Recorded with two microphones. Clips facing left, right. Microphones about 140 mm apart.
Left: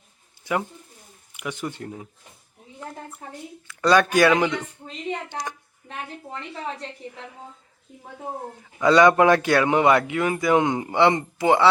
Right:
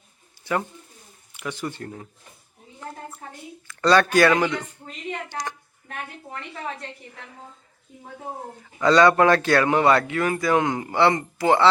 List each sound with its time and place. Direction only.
1.4 s a man's voice: 15° left (ahead or behind)
3.8 s a man's voice: 10° left (ahead or behind)
8.8 s a man's voice: 15° left (ahead or behind)